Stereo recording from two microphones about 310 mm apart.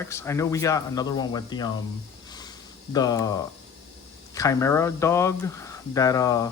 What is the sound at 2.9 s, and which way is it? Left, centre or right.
Speech, centre.